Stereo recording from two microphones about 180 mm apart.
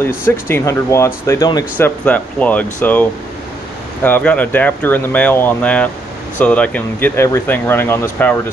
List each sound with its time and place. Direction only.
0.2 s speech: 15° left (ahead or behind)
1.8 s speech: 10° left (ahead or behind)